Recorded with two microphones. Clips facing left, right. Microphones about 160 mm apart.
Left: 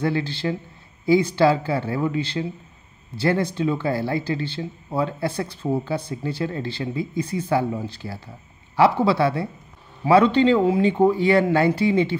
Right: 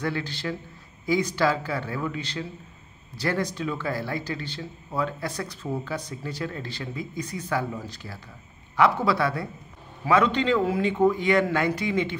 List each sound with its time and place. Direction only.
0.0 s speech: 30° left (ahead or behind)